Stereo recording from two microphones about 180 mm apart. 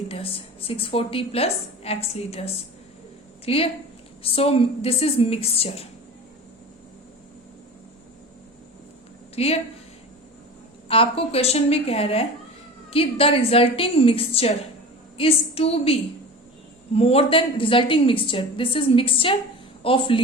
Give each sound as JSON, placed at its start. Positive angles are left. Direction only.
{"t": 0.1, "sound": "a woman's voice", "side_deg": 30}
{"t": 9.3, "sound": "speech", "side_deg": 35}
{"t": 10.8, "sound": "a woman's voice", "side_deg": 30}